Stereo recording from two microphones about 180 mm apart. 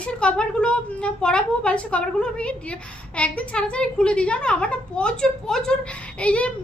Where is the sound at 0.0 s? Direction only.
5° left (ahead or behind).